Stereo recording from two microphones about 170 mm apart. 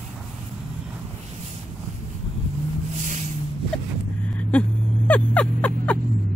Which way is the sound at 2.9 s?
45° right (ahead or behind).